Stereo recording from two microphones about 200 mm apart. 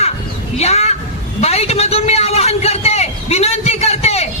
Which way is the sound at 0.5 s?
30° left (ahead or behind).